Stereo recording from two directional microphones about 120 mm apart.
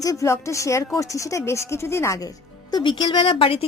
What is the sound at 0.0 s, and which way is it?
Speech, 30° left (ahead or behind).